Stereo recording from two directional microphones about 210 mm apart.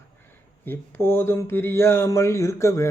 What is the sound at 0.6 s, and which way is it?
Speech, 10° left (ahead or behind).